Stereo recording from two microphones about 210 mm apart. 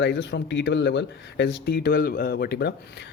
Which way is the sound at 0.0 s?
55° left (ahead or behind).